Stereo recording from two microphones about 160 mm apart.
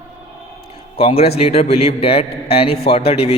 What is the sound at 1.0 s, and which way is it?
A man's voice, 35° left (ahead or behind).